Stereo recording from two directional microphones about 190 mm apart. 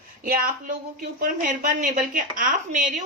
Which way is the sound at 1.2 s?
45° right (ahead or behind).